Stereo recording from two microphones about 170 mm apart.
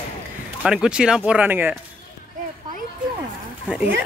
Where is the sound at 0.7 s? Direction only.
5° right (ahead or behind).